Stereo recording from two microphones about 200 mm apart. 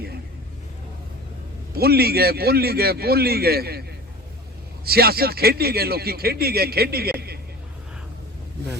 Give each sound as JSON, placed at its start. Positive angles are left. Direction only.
{"t": 1.7, "sound": "a man's voice", "side_deg": -50}
{"t": 4.9, "sound": "a man's voice", "side_deg": -50}